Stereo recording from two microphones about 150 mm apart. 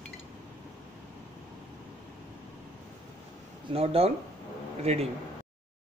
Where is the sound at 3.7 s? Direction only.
40° right (ahead or behind).